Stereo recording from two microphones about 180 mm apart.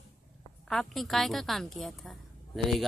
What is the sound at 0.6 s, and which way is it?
A woman's voice, centre (ahead or behind).